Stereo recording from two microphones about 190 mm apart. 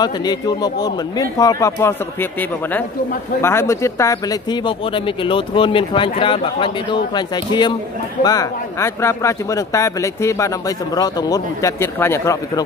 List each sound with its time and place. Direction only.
0.0 s speech: 20° left (ahead or behind)
3.4 s speech: 15° left (ahead or behind)